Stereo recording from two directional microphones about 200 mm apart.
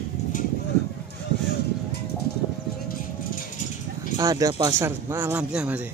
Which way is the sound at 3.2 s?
45° left (ahead or behind).